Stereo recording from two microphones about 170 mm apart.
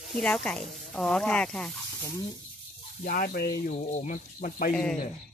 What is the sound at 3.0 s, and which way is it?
Speech, 55° left (ahead or behind).